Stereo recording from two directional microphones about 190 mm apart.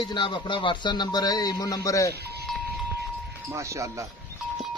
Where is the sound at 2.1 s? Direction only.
60° right (ahead or behind).